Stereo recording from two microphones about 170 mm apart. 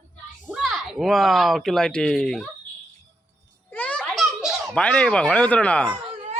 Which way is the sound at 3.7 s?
10° left (ahead or behind).